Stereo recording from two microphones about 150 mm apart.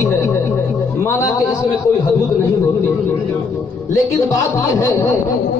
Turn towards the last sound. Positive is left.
turn(degrees=20)  # may be behind; listen again after turning